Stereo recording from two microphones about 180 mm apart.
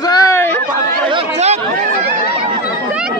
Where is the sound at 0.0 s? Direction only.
20° left (ahead or behind).